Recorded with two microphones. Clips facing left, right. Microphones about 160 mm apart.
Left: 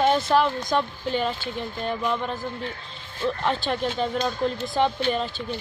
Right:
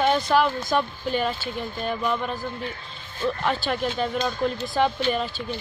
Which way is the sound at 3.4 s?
5° right (ahead or behind).